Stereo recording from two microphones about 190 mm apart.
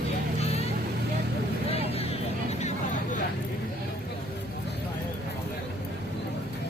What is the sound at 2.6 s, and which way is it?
Vehicle, 35° left (ahead or behind).